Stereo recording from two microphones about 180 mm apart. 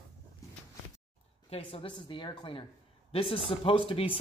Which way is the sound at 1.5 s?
30° left (ahead or behind).